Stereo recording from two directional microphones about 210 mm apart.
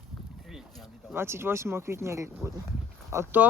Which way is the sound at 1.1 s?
10° right (ahead or behind).